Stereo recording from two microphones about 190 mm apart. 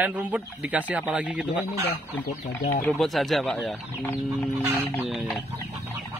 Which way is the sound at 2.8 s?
Centre (ahead or behind).